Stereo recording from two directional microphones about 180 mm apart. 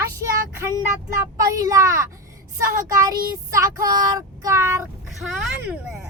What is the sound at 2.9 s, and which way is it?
Child singing, 20° right (ahead or behind).